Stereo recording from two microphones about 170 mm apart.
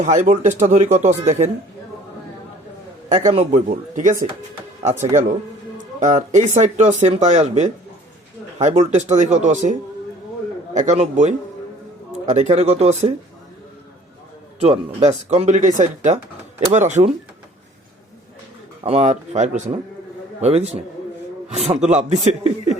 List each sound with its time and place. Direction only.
0.0 s speech: 45° right (ahead or behind)
3.1 s speech: 40° right (ahead or behind)
5.7 s speech: 45° right (ahead or behind)
10.8 s speech: 40° right (ahead or behind)
14.6 s speech: 40° right (ahead or behind)
18.8 s speech: 35° right (ahead or behind)